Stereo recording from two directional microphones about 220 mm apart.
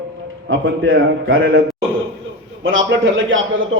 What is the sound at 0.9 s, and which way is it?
Speech, 65° right (ahead or behind).